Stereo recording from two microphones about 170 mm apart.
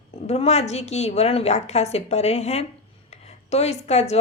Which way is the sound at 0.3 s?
40° left (ahead or behind).